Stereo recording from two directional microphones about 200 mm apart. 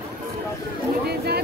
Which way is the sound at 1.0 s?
55° right (ahead or behind).